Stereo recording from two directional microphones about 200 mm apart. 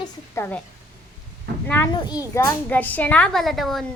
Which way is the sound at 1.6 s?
10° left (ahead or behind).